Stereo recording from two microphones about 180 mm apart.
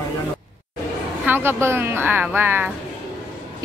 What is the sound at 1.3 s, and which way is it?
A woman's voice, 10° right (ahead or behind).